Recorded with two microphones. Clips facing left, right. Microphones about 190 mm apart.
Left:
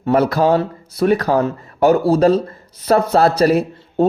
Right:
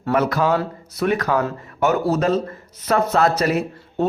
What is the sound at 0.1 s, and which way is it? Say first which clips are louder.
Speech: left 5 dB; 30° left (ahead or behind).